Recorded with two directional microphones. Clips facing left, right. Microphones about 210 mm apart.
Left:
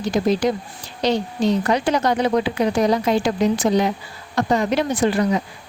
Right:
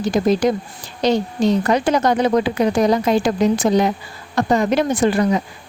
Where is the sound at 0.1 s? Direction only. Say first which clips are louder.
Right 2 dB; 50° right (ahead or behind).